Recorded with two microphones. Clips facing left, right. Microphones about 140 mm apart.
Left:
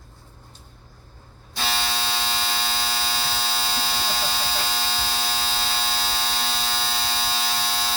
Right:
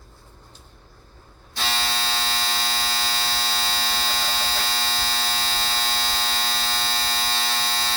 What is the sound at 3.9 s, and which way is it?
Electric shaver, 10° left (ahead or behind).